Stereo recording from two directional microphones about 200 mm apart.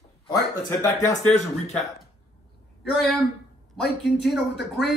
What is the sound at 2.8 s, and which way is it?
Speech, centre (ahead or behind).